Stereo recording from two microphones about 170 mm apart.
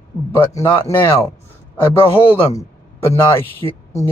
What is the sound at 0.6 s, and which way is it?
Speech, 20° left (ahead or behind).